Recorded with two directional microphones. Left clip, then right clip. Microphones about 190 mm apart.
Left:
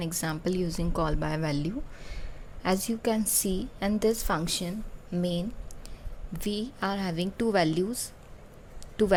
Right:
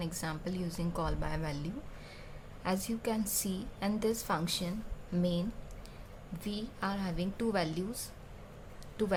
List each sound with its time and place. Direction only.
0.0 s a woman's voice: 35° left (ahead or behind)